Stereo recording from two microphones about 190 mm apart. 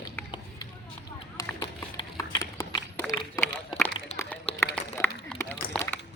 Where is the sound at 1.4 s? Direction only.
15° left (ahead or behind).